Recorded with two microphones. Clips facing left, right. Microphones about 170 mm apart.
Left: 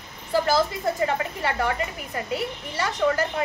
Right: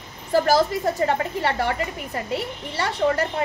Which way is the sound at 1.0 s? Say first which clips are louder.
Right 3 dB; 30° right (ahead or behind).